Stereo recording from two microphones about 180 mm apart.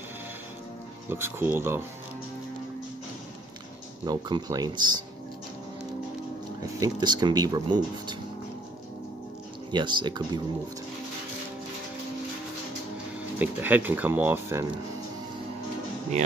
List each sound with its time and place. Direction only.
1.1 s speech: 10° right (ahead or behind)
4.0 s speech: 20° right (ahead or behind)
6.6 s speech: 20° right (ahead or behind)
9.7 s speech: 25° right (ahead or behind)
13.4 s speech: 10° right (ahead or behind)